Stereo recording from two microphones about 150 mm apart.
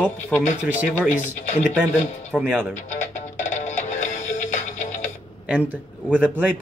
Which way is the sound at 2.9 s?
50° left (ahead or behind).